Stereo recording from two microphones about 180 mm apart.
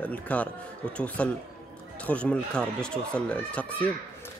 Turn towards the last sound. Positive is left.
turn(degrees=5)  # may be behind; listen again after turning